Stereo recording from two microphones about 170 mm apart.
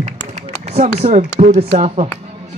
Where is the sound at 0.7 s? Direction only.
40° right (ahead or behind).